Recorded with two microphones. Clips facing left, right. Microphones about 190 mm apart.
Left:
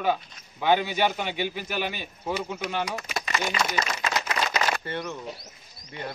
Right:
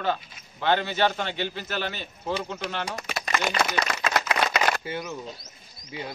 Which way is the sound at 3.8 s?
60° right (ahead or behind).